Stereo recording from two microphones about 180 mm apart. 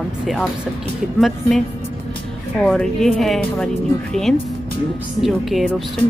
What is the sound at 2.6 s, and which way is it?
Speech, 5° left (ahead or behind).